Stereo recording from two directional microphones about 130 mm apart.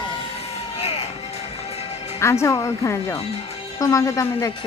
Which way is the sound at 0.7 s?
50° left (ahead or behind).